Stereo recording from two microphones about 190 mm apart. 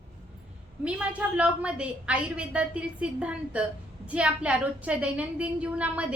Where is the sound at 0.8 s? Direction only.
5° right (ahead or behind).